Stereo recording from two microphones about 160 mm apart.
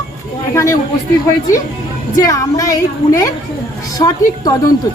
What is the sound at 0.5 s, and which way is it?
Speech, 20° left (ahead or behind).